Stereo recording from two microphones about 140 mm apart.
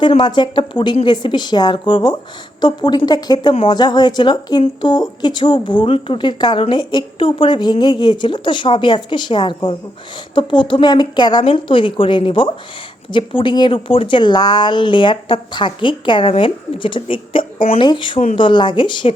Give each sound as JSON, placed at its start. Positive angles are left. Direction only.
{"t": 0.2, "sound": "speech", "side_deg": 30}
{"t": 3.5, "sound": "speech", "side_deg": 45}
{"t": 3.8, "sound": "speech", "side_deg": 30}